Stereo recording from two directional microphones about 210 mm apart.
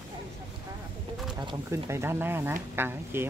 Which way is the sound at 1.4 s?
15° right (ahead or behind).